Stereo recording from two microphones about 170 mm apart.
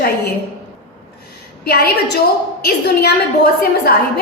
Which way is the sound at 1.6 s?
65° left (ahead or behind).